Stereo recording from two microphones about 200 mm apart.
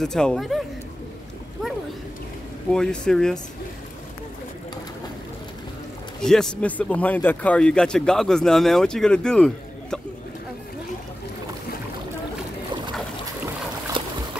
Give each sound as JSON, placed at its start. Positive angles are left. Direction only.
{"t": 0.0, "sound": "speech", "side_deg": 5}
{"t": 2.7, "sound": "speech", "side_deg": 5}
{"t": 6.2, "sound": "speech", "side_deg": 5}
{"t": 14.0, "sound": "boat", "side_deg": -25}